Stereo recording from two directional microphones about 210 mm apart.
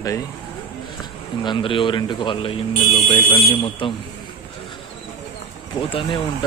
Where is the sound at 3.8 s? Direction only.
25° left (ahead or behind).